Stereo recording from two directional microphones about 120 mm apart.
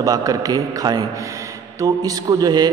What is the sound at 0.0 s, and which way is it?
A man's voice, 30° right (ahead or behind).